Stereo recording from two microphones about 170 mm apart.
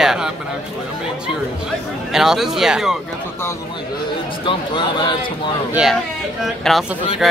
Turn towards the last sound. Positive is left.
turn(degrees=0)  # may be behind; listen again after turning